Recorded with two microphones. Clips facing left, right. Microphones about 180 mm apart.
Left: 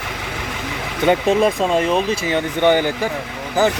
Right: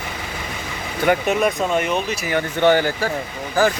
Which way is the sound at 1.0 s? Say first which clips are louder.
Left 3 dB; 30° left (ahead or behind).